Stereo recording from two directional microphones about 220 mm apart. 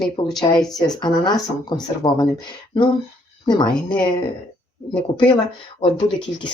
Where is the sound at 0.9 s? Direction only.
20° left (ahead or behind).